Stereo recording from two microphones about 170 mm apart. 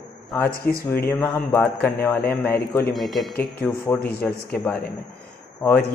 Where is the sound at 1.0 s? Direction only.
10° left (ahead or behind).